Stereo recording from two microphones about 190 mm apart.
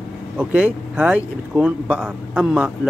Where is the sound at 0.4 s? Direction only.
5° right (ahead or behind).